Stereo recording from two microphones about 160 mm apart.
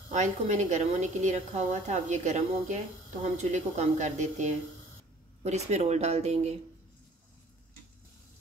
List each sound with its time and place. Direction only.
0.1 s a woman's voice: 50° right (ahead or behind)